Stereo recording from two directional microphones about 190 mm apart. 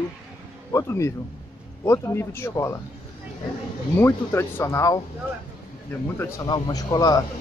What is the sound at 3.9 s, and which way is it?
Speech, 10° left (ahead or behind).